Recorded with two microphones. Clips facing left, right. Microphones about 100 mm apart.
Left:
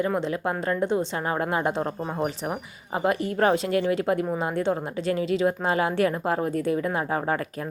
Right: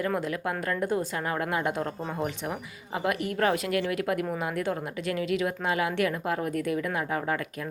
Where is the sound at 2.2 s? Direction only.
30° left (ahead or behind).